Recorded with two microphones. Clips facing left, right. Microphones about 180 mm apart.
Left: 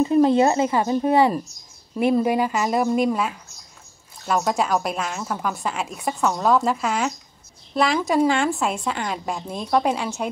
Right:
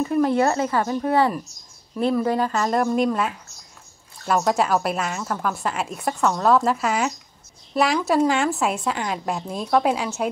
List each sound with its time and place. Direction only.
0.0 s a woman's voice: 20° left (ahead or behind); by 10.3 s 5° right (ahead or behind)